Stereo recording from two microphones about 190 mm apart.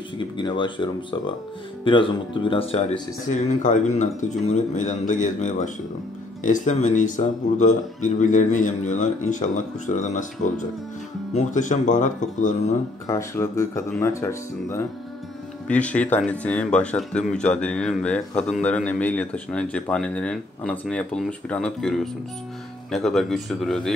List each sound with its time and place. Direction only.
0.4 s speech: 25° left (ahead or behind); by 12.7 s 40° left (ahead or behind)
13.0 s speech: 15° left (ahead or behind)